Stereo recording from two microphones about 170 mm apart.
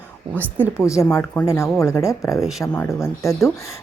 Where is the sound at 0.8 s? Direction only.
20° left (ahead or behind).